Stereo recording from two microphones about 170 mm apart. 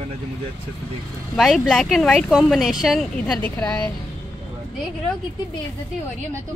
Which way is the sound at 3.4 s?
10° left (ahead or behind).